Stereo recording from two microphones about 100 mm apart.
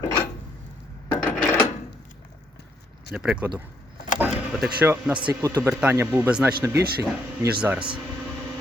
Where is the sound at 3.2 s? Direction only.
10° right (ahead or behind).